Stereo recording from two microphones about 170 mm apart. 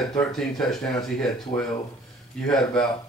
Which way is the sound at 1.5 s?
45° left (ahead or behind).